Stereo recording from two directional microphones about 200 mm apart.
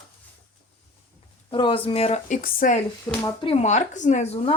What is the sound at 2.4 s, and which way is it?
Speech, 45° left (ahead or behind).